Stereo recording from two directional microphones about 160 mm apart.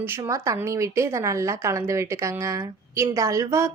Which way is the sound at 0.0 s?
15° right (ahead or behind).